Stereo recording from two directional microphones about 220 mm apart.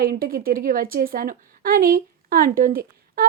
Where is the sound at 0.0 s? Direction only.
40° right (ahead or behind).